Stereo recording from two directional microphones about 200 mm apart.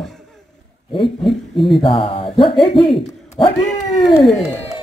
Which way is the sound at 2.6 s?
25° left (ahead or behind).